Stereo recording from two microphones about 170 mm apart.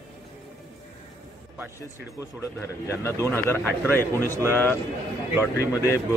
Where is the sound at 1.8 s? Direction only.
20° left (ahead or behind).